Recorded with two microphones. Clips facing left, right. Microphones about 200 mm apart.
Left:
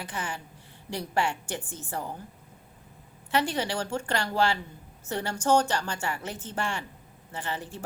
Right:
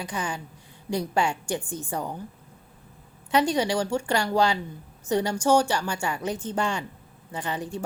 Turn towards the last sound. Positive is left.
turn(degrees=-15)  # may be behind; listen again after turning